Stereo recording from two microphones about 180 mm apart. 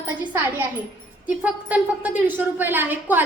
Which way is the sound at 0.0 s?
10° right (ahead or behind).